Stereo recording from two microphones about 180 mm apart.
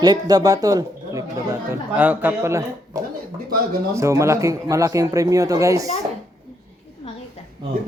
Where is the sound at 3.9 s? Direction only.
15° right (ahead or behind).